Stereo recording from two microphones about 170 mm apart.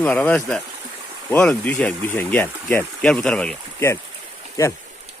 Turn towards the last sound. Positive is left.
turn(degrees=15)  # may be behind; listen again after turning